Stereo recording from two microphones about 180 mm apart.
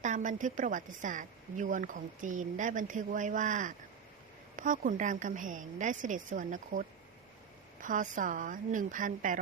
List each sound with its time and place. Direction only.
0.0 s speech: 45° right (ahead or behind)